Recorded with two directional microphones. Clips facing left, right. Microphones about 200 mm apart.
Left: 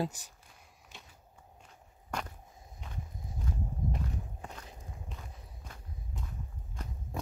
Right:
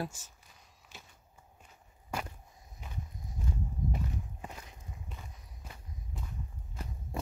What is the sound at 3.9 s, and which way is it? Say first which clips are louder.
Walk: even; 5° right (ahead or behind).